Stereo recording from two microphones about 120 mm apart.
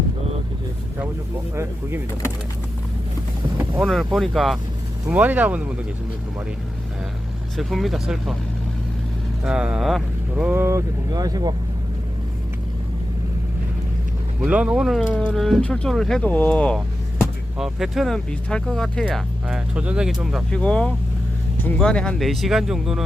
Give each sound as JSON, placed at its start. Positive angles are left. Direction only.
{"t": 3.8, "sound": "speech", "side_deg": 0}
{"t": 5.0, "sound": "speech", "side_deg": -15}
{"t": 7.5, "sound": "speech", "side_deg": 0}
{"t": 9.4, "sound": "speech", "side_deg": -10}
{"t": 10.6, "sound": "speech", "side_deg": -25}
{"t": 14.4, "sound": "speech", "side_deg": -10}
{"t": 16.7, "sound": "speech", "side_deg": -5}
{"t": 19.1, "sound": "speech", "side_deg": -5}
{"t": 20.5, "sound": "speech", "side_deg": 10}